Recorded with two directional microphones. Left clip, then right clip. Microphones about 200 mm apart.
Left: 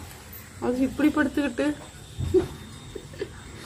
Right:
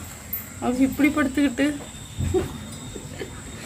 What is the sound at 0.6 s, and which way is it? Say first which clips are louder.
Speech: right 2 dB; 10° left (ahead or behind).